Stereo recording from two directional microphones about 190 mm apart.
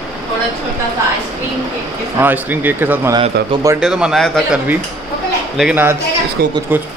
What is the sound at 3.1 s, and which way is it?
Speech, 25° right (ahead or behind).